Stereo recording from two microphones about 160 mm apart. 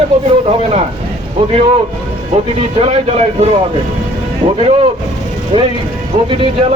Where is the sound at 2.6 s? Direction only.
40° right (ahead or behind).